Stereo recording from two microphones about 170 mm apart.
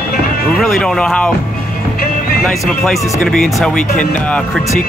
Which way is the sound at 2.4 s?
5° left (ahead or behind).